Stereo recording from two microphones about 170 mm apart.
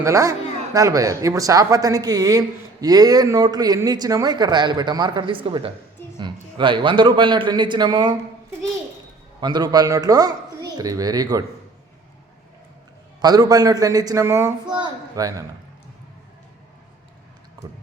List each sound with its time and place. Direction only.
0.0 s a man's voice: 20° right (ahead or behind)
9.4 s a man's voice: 25° right (ahead or behind)
13.2 s a man's voice: 20° right (ahead or behind)